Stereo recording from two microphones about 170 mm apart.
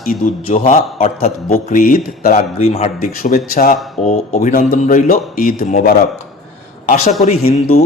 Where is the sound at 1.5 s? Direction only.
55° left (ahead or behind).